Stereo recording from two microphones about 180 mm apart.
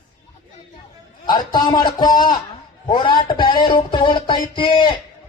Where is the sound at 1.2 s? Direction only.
25° left (ahead or behind).